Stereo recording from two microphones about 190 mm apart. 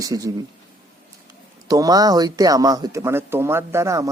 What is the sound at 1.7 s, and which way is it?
Speech, 20° right (ahead or behind).